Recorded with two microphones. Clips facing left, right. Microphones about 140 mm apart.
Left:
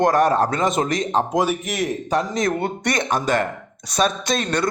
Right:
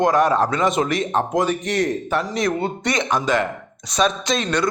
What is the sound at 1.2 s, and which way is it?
Speech, 10° left (ahead or behind).